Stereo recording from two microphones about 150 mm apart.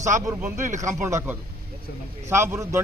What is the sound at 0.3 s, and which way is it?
A man's voice, 15° right (ahead or behind).